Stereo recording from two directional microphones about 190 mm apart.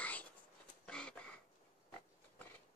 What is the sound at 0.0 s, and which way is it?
Whispering, 10° left (ahead or behind).